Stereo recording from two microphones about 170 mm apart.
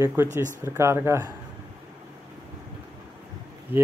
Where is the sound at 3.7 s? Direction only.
10° right (ahead or behind).